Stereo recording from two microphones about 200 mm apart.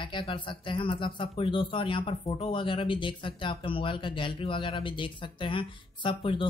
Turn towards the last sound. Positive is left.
turn(degrees=25)  # may be behind; listen again after turning